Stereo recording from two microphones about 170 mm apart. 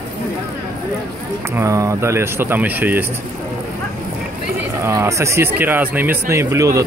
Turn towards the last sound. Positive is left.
turn(degrees=-20)  # may be behind; listen again after turning